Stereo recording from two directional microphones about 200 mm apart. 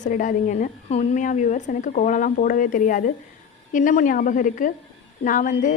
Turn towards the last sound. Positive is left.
turn(degrees=40)  # may be behind; listen again after turning